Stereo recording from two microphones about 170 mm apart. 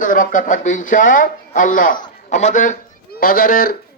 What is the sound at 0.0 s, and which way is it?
Speech, 50° left (ahead or behind).